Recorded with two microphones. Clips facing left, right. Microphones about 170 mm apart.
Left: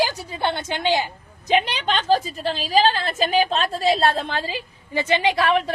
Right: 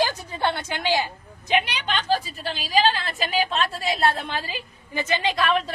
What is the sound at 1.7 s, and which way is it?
A woman's voice, 40° left (ahead or behind).